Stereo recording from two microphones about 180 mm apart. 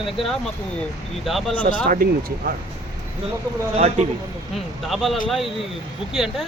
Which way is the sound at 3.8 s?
40° right (ahead or behind).